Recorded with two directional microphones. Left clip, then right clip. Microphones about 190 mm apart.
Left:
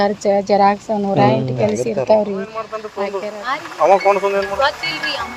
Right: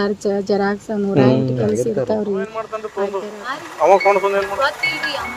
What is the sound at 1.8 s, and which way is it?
Speech, 25° right (ahead or behind).